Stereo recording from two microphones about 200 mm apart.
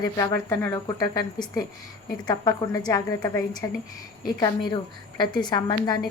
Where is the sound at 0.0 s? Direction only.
20° left (ahead or behind).